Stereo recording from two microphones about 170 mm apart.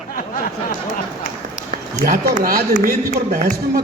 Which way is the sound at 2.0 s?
55° right (ahead or behind).